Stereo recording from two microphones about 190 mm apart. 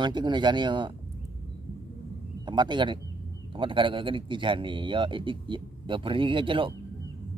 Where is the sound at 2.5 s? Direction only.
25° right (ahead or behind).